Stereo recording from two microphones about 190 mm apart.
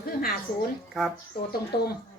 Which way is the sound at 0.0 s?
50° left (ahead or behind).